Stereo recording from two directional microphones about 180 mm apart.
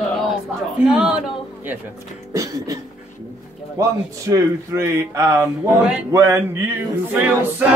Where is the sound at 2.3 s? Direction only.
20° right (ahead or behind).